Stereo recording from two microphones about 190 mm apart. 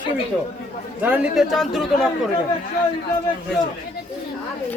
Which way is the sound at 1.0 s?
5° right (ahead or behind).